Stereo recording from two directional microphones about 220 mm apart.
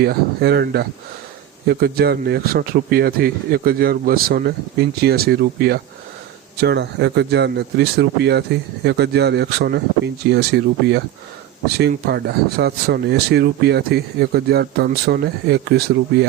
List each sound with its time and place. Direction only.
0.0 s speech: 45° right (ahead or behind)